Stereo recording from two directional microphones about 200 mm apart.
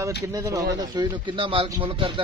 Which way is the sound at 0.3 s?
15° right (ahead or behind).